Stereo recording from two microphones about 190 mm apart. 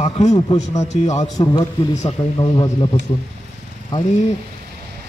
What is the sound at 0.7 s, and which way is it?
Speech, 35° left (ahead or behind).